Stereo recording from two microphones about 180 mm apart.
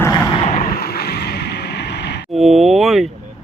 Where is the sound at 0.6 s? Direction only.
60° left (ahead or behind).